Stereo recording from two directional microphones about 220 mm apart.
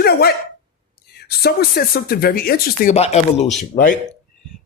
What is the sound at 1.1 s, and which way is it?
Speech, 45° left (ahead or behind).